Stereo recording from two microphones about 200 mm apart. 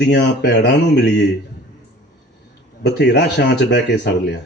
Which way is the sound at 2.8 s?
60° left (ahead or behind).